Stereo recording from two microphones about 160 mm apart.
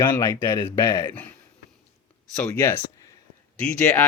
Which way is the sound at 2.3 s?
10° left (ahead or behind).